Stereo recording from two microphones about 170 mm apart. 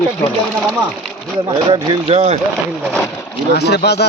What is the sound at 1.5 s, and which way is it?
Speech, 25° right (ahead or behind).